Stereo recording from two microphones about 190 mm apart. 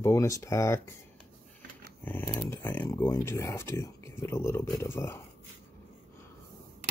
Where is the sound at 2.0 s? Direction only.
10° left (ahead or behind).